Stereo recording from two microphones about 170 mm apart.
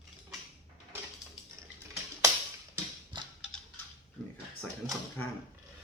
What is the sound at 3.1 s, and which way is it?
Mechanisms, 25° right (ahead or behind).